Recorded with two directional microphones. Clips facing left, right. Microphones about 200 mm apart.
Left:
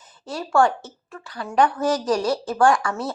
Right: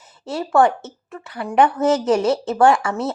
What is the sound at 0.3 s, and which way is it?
Speech, 20° right (ahead or behind).